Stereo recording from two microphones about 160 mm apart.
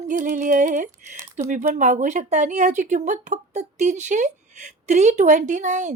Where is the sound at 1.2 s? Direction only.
45° right (ahead or behind).